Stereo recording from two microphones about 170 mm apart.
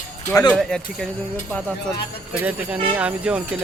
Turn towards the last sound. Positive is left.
turn(degrees=-5)  # may be behind; listen again after turning